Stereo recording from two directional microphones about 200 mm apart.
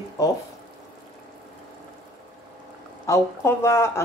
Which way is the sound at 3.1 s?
15° left (ahead or behind).